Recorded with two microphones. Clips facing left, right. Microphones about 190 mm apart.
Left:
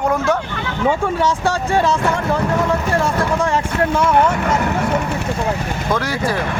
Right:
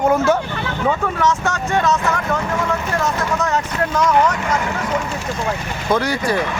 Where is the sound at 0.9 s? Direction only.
30° left (ahead or behind).